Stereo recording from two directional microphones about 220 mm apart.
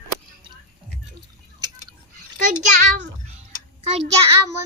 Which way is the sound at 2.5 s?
35° right (ahead or behind).